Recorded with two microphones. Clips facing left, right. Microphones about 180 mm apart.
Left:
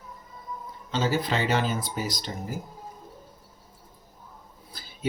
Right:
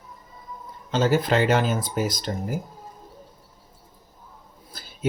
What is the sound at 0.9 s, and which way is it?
Speech, 50° right (ahead or behind).